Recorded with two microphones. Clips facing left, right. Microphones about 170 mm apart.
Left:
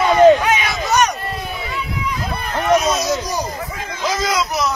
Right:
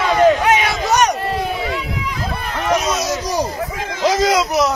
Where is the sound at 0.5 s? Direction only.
70° right (ahead or behind); by 2.1 s 90° right.